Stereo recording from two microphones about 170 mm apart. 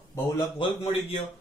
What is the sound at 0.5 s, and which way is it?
Speech, 35° left (ahead or behind).